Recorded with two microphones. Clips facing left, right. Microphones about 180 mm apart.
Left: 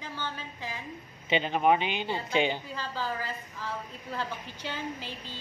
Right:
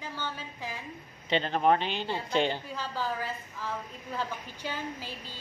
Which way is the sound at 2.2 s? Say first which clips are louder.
Even; centre (ahead or behind).